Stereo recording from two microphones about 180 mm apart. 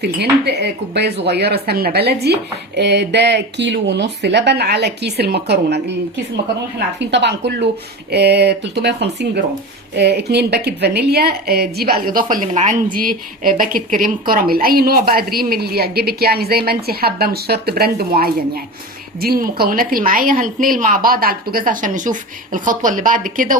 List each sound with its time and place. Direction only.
0.0 s a woman's voice: 65° right (ahead or behind); by 23.6 s 50° right (ahead or behind)